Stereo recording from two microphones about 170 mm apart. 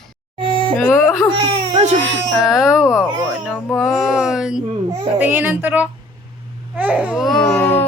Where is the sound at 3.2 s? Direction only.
5° left (ahead or behind).